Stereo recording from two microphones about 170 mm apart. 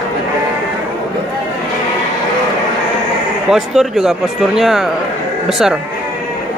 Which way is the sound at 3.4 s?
Centre (ahead or behind).